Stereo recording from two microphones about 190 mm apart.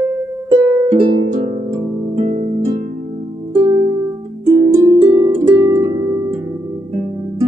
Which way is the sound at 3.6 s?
25° right (ahead or behind).